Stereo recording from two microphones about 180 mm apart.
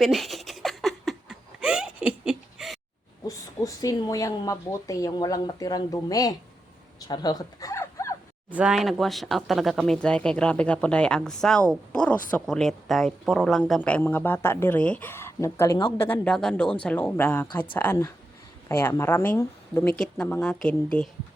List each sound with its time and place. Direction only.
0.0 s giggle: centre (ahead or behind)
3.2 s speech: 20° left (ahead or behind)
7.1 s a sound: 20° left (ahead or behind)
8.4 s speech: 5° right (ahead or behind)